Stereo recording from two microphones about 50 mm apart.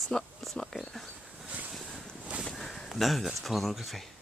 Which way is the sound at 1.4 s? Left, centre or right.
Right.